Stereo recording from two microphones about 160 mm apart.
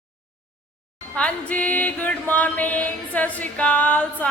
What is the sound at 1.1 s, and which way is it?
Music, 10° left (ahead or behind).